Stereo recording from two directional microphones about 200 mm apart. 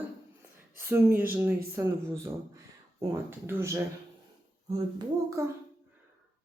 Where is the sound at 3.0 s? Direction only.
15° right (ahead or behind).